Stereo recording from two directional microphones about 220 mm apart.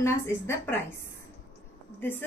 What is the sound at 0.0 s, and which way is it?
Speech, 10° left (ahead or behind).